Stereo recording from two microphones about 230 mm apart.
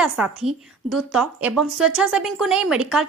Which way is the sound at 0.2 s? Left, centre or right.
Centre.